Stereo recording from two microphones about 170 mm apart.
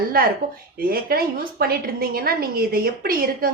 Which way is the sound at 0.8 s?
60° right (ahead or behind).